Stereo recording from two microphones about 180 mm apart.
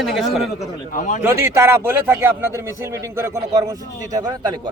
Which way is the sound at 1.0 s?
45° left (ahead or behind).